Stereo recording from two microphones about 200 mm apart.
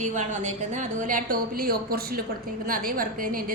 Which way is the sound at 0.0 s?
35° right (ahead or behind).